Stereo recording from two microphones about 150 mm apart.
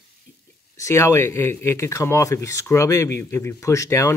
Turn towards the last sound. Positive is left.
turn(degrees=20)  # may be behind; listen again after turning